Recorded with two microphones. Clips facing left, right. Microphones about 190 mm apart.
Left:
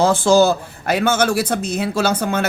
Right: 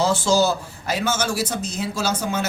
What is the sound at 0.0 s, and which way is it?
Speech, 55° left (ahead or behind).